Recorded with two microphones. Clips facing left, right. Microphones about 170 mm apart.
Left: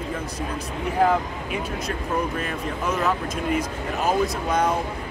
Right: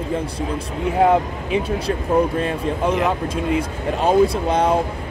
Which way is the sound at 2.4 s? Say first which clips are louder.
Right 7 dB; 30° right (ahead or behind).